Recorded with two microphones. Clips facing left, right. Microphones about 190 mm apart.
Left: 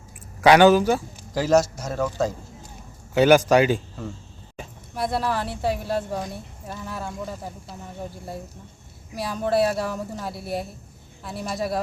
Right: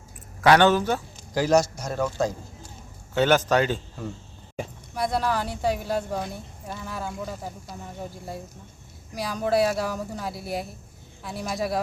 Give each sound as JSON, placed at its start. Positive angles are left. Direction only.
{"t": 0.4, "sound": "a man's voice", "side_deg": 10}
{"t": 4.9, "sound": "a man's voice", "side_deg": 0}
{"t": 9.1, "sound": "a man's voice", "side_deg": 0}